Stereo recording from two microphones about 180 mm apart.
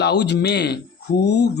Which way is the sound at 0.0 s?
70° left (ahead or behind).